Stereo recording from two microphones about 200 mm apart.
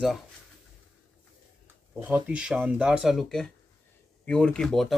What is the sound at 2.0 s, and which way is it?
Speech, 10° right (ahead or behind).